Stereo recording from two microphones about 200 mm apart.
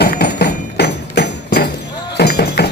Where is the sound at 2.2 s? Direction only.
55° left (ahead or behind).